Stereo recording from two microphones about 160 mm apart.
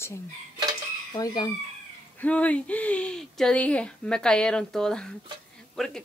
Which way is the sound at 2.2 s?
10° left (ahead or behind).